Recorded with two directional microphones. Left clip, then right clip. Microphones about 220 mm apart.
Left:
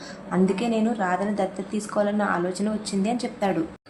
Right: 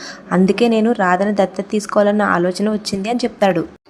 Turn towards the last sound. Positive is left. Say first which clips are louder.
# right 10 dB
turn(degrees=-35)  # may be behind; listen again after turning